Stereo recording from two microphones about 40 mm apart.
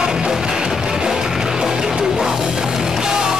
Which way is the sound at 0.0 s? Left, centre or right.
Centre.